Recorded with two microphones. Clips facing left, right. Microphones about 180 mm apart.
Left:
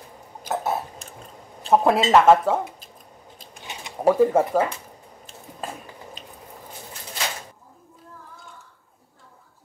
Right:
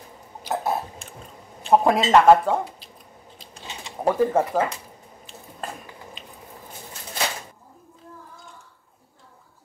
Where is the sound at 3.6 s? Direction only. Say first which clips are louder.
Left 1 dB; 15° left (ahead or behind).